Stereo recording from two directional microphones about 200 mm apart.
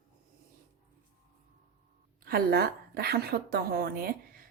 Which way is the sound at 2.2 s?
50° right (ahead or behind).